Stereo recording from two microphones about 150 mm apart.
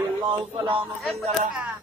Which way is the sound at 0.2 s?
30° right (ahead or behind).